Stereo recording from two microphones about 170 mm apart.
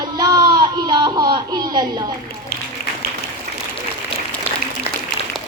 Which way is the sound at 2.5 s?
60° left (ahead or behind).